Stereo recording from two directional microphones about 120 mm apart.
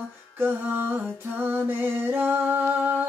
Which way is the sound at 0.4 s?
15° right (ahead or behind).